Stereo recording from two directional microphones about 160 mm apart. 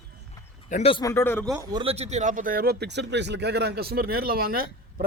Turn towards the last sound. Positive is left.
turn(degrees=-65)  # may be behind; listen again after turning